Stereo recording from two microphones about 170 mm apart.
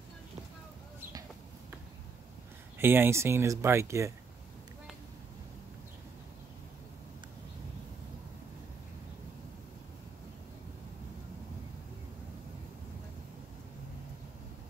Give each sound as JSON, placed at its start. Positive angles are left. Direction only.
{"t": 2.8, "sound": "speech", "side_deg": -15}